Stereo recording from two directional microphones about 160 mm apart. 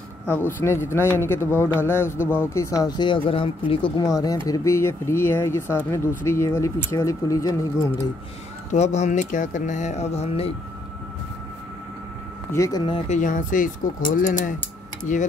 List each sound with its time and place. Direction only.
0.6 s speech: 15° left (ahead or behind)
8.7 s speech: 45° left (ahead or behind)
12.5 s speech: 20° left (ahead or behind)
12.8 s speech: 35° left (ahead or behind)
13.2 s speech: 55° left (ahead or behind)